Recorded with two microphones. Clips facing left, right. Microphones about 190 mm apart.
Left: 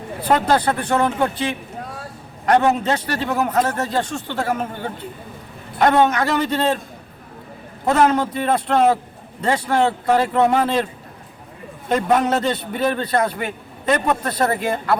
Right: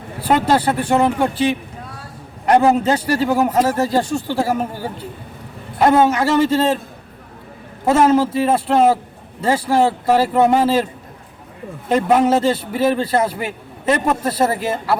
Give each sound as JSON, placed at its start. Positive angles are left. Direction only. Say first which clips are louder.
{"t": 0.3, "sound": "a man's voice", "louder": "right 2 dB", "side_deg": -5}
{"t": 0.8, "sound": "speech", "louder": "right 3 dB", "side_deg": -30}
{"t": 2.6, "sound": "a man's voice", "louder": "right 4 dB", "side_deg": -30}
{"t": 3.5, "sound": "a man's voice", "louder": "right 4 dB", "side_deg": -10}
{"t": 7.9, "sound": "a man's voice", "louder": "right 3 dB", "side_deg": -5}
{"t": 11.9, "sound": "a man's voice", "louder": "right 3 dB", "side_deg": -10}